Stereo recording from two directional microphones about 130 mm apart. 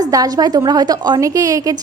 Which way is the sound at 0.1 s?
30° right (ahead or behind).